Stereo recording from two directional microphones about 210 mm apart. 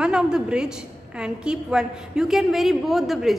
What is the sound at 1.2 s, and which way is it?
A woman's voice, 5° right (ahead or behind).